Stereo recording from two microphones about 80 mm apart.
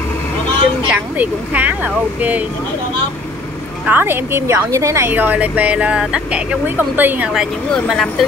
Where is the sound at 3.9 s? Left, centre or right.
Right.